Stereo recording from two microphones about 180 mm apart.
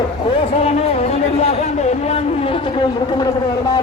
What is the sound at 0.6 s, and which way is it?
Speech, 35° left (ahead or behind).